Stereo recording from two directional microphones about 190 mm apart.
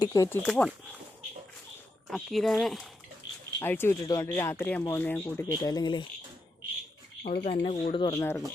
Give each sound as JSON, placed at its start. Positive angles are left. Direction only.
{"t": 0.0, "sound": "speech", "side_deg": 15}
{"t": 0.4, "sound": "speech", "side_deg": 5}
{"t": 2.0, "sound": "speech", "side_deg": 0}
{"t": 3.6, "sound": "speech", "side_deg": 10}
{"t": 7.3, "sound": "speech", "side_deg": 45}
{"t": 7.5, "sound": "speech", "side_deg": 30}
{"t": 8.0, "sound": "speech", "side_deg": 15}